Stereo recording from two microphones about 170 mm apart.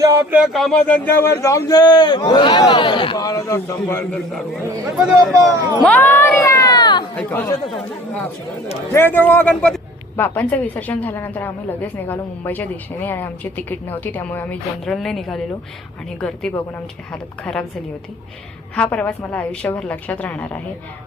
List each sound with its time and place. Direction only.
0.0 s speech: 15° right (ahead or behind); by 4.2 s 15° left (ahead or behind)
4.9 s a woman's voice: centre (ahead or behind)
5.8 s crowd: 10° left (ahead or behind); by 7.0 s 25° left (ahead or behind)
7.2 s a woman's voice: 10° left (ahead or behind)
18.8 s speech: 5° left (ahead or behind)